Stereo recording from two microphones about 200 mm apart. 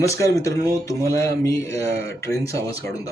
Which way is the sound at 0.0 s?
15° left (ahead or behind).